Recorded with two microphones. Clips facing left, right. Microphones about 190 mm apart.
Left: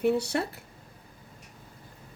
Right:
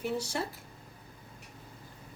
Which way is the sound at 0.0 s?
65° left (ahead or behind).